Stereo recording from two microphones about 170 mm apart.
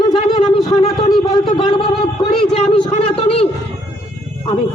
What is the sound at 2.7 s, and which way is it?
Speech, 30° left (ahead or behind).